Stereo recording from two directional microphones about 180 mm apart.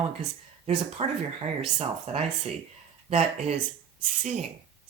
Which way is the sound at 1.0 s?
35° right (ahead or behind).